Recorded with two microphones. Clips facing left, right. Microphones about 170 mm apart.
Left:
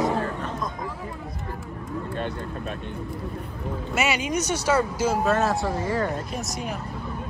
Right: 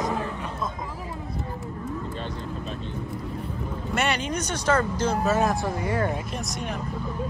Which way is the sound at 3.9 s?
5° left (ahead or behind).